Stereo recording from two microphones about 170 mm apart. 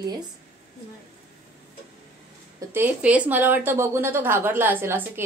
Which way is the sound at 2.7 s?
10° right (ahead or behind).